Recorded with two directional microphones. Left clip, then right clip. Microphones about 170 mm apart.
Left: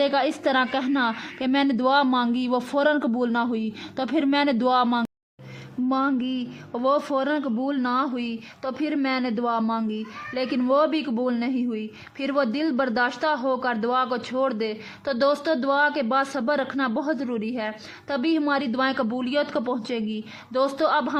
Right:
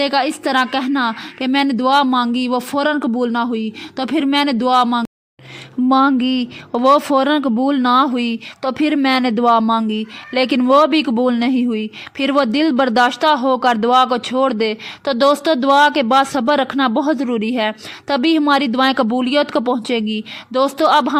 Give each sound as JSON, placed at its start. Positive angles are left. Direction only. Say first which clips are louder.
{"t": 0.0, "sound": "a woman's voice", "louder": "right 5 dB", "side_deg": -25}
{"t": 5.9, "sound": "speech", "louder": "right 11 dB", "side_deg": -45}